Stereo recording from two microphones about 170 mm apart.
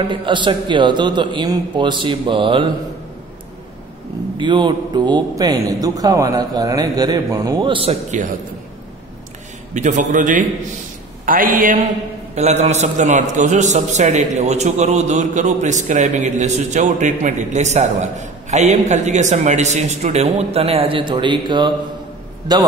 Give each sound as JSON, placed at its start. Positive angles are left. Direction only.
{"t": 0.0, "sound": "a man's voice", "side_deg": -30}
{"t": 4.4, "sound": "a man's voice", "side_deg": -30}
{"t": 9.8, "sound": "a man's voice", "side_deg": -45}
{"t": 12.4, "sound": "a man's voice", "side_deg": -40}